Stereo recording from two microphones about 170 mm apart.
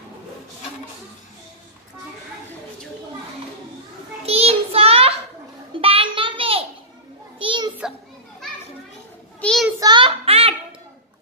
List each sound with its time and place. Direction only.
4.3 s child singing: 35° right (ahead or behind)
5.8 s a sound: 35° right (ahead or behind)
7.3 s children playing: 30° right (ahead or behind)
9.4 s child singing: 5° left (ahead or behind)
9.8 s child singing: 25° right (ahead or behind)